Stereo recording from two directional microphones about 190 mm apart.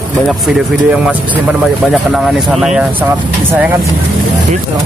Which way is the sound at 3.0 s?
15° right (ahead or behind).